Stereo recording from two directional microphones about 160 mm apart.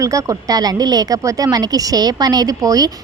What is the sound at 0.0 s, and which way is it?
Speech, 20° right (ahead or behind).